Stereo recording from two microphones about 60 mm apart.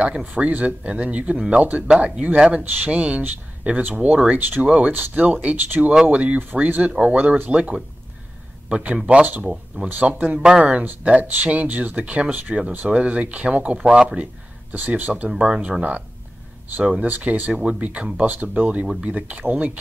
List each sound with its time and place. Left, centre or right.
0.3 s speech: right
7.2 s speech: right
8.6 s speech: centre
15.2 s speech: centre
18.9 s speech: centre
19.1 s speech: right